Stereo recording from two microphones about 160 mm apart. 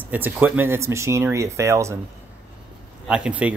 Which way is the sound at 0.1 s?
10° right (ahead or behind).